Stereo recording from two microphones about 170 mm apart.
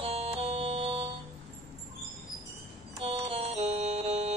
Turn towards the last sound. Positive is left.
turn(degrees=-35)  # may be behind; listen again after turning